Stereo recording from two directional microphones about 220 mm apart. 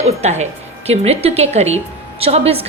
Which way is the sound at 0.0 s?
30° right (ahead or behind).